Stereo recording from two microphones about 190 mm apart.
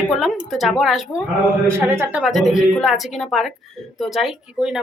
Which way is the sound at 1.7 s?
15° right (ahead or behind).